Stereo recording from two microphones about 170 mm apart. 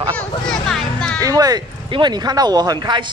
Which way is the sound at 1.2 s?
20° right (ahead or behind).